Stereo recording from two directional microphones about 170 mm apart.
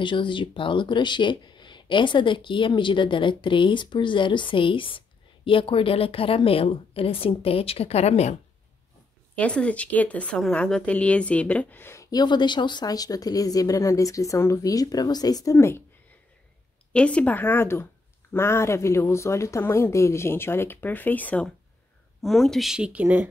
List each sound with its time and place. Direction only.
0.0 s speech: 30° left (ahead or behind)
9.3 s speech: 5° left (ahead or behind)
16.9 s speech: 5° left (ahead or behind)